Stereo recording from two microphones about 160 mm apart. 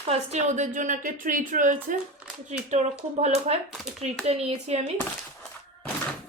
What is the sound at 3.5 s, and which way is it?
Speech, 40° right (ahead or behind).